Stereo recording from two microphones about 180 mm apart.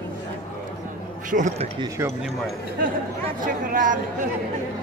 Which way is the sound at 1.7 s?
20° right (ahead or behind).